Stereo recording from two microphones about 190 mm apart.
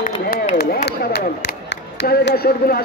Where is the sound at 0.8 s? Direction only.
60° left (ahead or behind).